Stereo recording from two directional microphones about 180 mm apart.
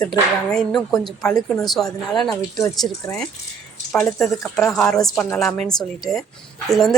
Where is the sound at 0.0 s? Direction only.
5° left (ahead or behind).